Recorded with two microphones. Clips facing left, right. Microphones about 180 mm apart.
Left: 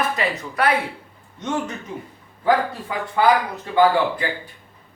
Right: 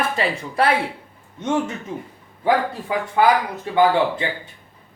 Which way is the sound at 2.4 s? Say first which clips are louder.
Even; 20° right (ahead or behind).